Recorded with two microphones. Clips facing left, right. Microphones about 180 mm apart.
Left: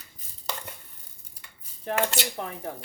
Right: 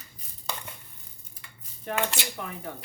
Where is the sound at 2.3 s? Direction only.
30° left (ahead or behind).